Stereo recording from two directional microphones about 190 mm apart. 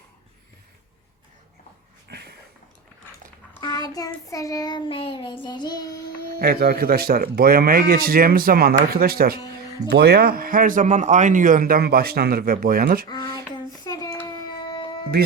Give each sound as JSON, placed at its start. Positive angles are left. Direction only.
{"t": 2.0, "sound": "a sound", "side_deg": -60}
{"t": 3.6, "sound": "child singing", "side_deg": 20}
{"t": 6.4, "sound": "speech", "side_deg": -55}
{"t": 13.1, "sound": "child singing", "side_deg": 20}